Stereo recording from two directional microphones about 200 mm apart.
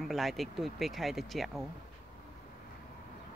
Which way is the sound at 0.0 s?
Centre (ahead or behind).